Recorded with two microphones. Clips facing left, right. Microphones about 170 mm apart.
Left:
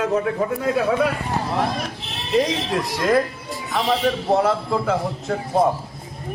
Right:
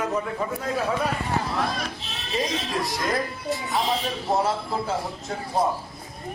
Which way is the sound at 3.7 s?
65° left (ahead or behind).